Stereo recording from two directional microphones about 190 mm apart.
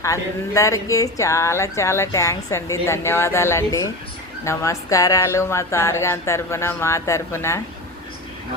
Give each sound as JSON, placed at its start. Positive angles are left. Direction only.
{"t": 0.0, "sound": "speech", "side_deg": 15}